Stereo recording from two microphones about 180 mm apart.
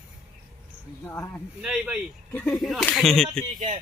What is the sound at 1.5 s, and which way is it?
Speech, 10° right (ahead or behind).